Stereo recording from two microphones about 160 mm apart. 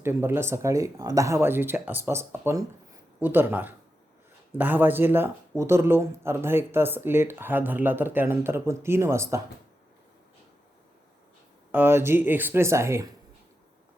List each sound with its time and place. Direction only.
0.0 s speech: 15° right (ahead or behind)
11.7 s speech: 15° right (ahead or behind)